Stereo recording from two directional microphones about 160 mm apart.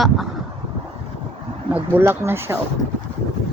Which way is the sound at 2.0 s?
15° right (ahead or behind).